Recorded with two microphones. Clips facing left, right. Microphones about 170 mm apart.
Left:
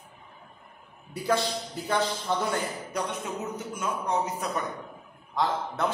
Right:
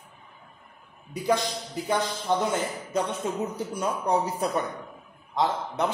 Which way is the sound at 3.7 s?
35° right (ahead or behind).